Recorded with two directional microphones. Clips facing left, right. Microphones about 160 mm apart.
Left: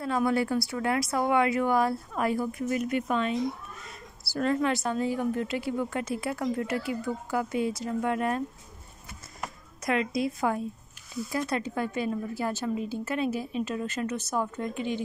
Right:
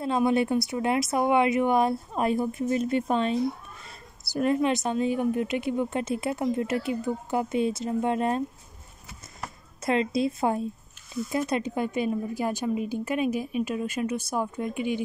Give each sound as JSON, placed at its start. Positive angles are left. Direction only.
{"t": 0.0, "sound": "a woman's voice", "side_deg": -20}
{"t": 4.2, "sound": "a woman's voice", "side_deg": -20}
{"t": 9.8, "sound": "a woman's voice", "side_deg": -25}